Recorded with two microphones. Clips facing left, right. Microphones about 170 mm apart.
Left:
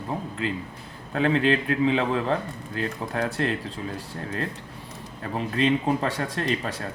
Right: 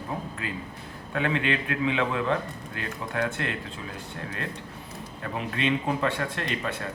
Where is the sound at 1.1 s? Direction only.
35° left (ahead or behind).